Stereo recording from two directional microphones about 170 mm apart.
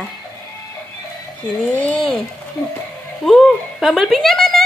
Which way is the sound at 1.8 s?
5° left (ahead or behind).